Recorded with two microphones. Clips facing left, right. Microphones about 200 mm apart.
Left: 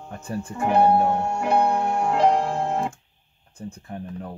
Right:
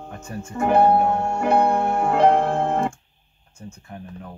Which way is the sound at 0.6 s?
Centre (ahead or behind).